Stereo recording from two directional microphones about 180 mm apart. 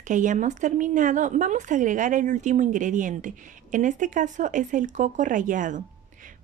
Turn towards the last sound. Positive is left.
turn(degrees=-45)  # may be behind; listen again after turning